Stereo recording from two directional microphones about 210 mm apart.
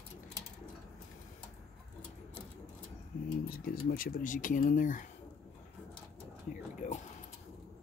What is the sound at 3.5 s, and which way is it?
Speech, 45° left (ahead or behind).